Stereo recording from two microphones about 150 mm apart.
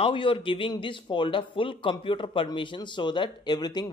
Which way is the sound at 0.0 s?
35° left (ahead or behind).